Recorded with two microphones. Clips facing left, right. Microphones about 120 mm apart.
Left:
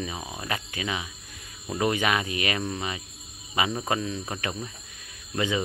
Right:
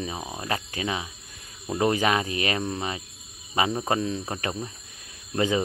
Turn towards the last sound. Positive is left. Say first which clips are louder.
# right 3 dB
turn(degrees=-35)  # may be behind; listen again after turning